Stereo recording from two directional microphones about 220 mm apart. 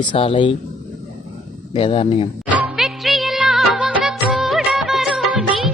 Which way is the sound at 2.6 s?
Centre (ahead or behind).